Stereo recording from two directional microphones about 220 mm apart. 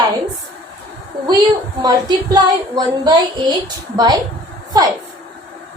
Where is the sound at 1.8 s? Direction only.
20° right (ahead or behind).